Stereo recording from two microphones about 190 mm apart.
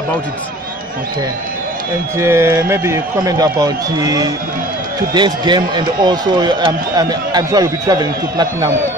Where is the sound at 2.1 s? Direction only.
15° right (ahead or behind).